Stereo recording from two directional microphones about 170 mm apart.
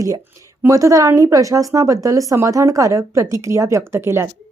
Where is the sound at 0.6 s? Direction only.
15° right (ahead or behind).